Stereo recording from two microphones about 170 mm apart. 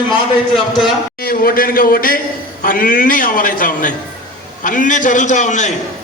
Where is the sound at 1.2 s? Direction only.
60° left (ahead or behind).